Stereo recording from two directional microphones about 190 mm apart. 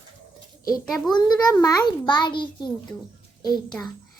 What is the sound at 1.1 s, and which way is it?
A child's voice, 20° left (ahead or behind).